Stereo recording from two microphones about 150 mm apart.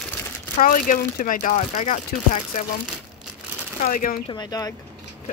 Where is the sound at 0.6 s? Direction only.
60° left (ahead or behind).